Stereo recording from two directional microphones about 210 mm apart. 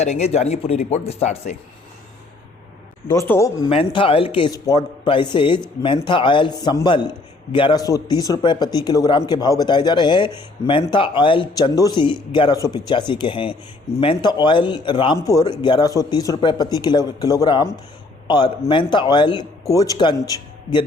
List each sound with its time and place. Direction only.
0.0 s speech: 30° left (ahead or behind)
3.1 s speech: 15° left (ahead or behind)
3.7 s a man's voice: 25° left (ahead or behind)